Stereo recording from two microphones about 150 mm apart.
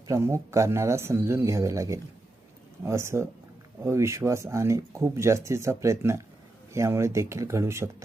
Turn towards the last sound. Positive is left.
turn(degrees=-20)  # may be behind; listen again after turning